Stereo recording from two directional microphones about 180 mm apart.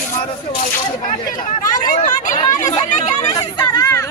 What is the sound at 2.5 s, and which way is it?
Speech, 20° left (ahead or behind).